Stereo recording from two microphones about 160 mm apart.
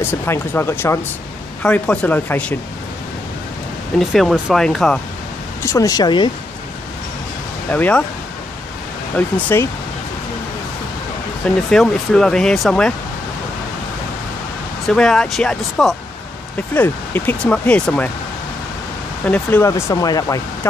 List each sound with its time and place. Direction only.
0.0 s speech: 15° left (ahead or behind)
4.0 s speech: centre (ahead or behind)
5.7 s speech: 20° left (ahead or behind)
7.7 s speech: 10° left (ahead or behind)
9.1 s speech: 15° left (ahead or behind)
11.7 s speech: 5° left (ahead or behind)
14.9 s speech: 5° left (ahead or behind)
16.7 s speech: 10° left (ahead or behind)
19.2 s speech: 10° left (ahead or behind)